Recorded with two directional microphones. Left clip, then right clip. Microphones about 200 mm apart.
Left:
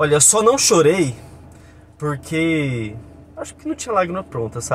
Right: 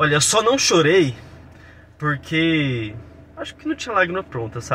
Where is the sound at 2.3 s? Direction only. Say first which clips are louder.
Even; 15° left (ahead or behind).